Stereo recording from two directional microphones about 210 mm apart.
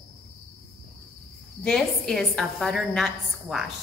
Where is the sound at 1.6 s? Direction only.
5° left (ahead or behind).